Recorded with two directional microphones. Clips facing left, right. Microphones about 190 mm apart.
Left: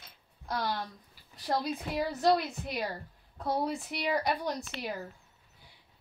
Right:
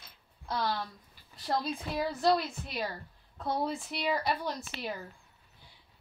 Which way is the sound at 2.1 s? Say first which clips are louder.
Left 1 dB; 50° left (ahead or behind).